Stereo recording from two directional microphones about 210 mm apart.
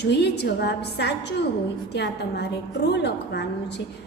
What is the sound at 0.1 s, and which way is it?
A woman's voice, 55° left (ahead or behind).